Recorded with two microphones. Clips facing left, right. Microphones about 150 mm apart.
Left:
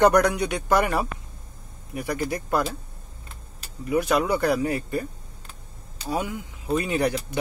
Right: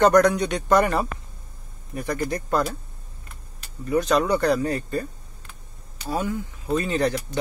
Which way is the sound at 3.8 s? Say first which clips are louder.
Right 1 dB; 10° left (ahead or behind).